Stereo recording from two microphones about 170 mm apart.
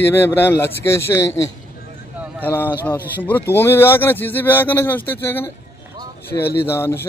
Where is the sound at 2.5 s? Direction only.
10° left (ahead or behind).